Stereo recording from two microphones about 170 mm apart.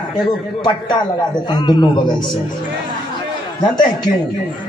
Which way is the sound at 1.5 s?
25° left (ahead or behind).